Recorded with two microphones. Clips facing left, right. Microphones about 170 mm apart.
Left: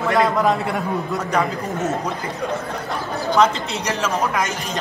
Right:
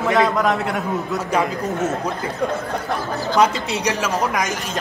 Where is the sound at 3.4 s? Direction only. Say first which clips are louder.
Even; 10° right (ahead or behind).